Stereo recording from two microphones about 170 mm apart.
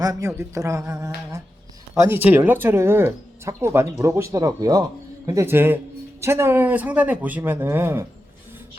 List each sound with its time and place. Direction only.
0.0 s speech: 20° right (ahead or behind)